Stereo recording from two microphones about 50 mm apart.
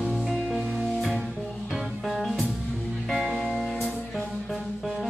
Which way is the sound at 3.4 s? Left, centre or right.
Centre.